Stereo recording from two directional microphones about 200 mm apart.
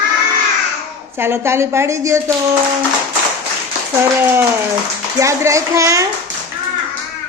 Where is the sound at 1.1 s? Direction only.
10° right (ahead or behind).